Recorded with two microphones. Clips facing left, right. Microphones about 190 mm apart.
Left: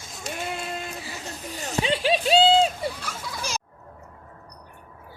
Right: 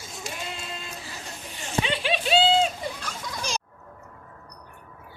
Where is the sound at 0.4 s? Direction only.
55° left (ahead or behind).